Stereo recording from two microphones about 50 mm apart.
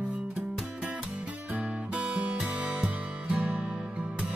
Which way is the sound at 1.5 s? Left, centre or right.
Right.